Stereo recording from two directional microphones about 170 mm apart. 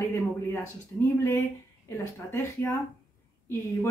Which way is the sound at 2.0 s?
15° left (ahead or behind).